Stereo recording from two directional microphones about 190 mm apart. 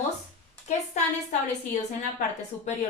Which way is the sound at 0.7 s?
35° left (ahead or behind).